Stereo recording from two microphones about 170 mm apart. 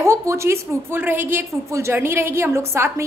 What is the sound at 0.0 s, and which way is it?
A woman's voice, 15° right (ahead or behind).